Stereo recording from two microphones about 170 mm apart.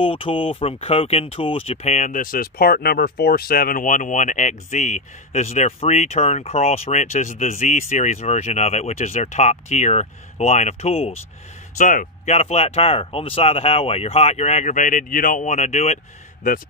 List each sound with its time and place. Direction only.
0.0 s speech: 30° left (ahead or behind)
11.8 s speech: 50° left (ahead or behind)